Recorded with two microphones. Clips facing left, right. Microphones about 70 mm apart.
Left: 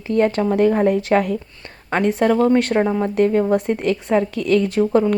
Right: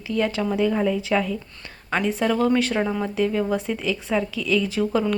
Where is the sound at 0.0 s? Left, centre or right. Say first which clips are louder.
Left 6 dB; left.